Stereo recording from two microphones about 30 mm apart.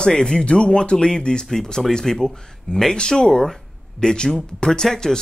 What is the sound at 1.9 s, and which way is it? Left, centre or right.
Speech, centre.